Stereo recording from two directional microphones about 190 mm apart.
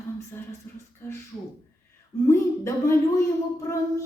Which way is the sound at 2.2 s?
15° left (ahead or behind).